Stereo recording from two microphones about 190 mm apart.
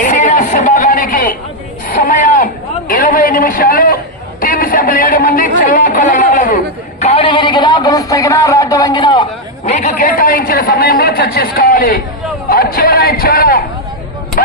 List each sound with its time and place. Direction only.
0.0 s a sound: 40° left (ahead or behind)
7.0 s speech: 30° left (ahead or behind)
9.6 s a man's voice: 40° left (ahead or behind)